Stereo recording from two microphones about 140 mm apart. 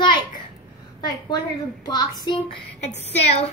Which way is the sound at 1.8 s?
30° left (ahead or behind).